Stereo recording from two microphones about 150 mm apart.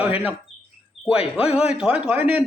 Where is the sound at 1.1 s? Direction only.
40° left (ahead or behind).